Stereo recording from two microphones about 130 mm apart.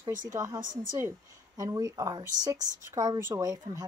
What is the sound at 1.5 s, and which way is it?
Speech, 30° right (ahead or behind).